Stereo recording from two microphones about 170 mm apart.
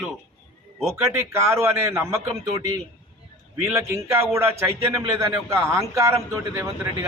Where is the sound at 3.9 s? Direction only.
15° right (ahead or behind).